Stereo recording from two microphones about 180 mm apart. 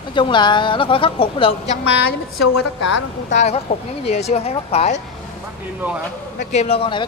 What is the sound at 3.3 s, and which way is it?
Speech, 35° left (ahead or behind).